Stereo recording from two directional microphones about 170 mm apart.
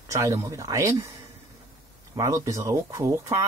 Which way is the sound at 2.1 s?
20° right (ahead or behind).